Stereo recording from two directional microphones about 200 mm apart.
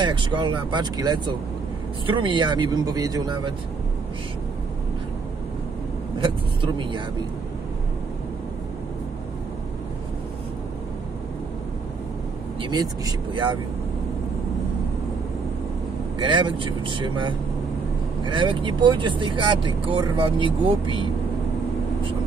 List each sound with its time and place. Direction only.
0.0 s speech: 25° right (ahead or behind)
6.1 s speech: 25° right (ahead or behind)
12.6 s speech: 20° right (ahead or behind)
16.2 s speech: 25° right (ahead or behind)